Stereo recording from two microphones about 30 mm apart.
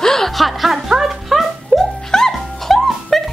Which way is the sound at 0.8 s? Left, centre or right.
Centre.